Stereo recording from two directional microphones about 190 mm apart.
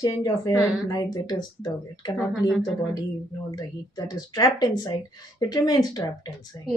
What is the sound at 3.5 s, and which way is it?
Speech, 20° left (ahead or behind).